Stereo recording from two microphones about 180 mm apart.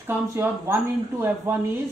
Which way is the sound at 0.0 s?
15° right (ahead or behind).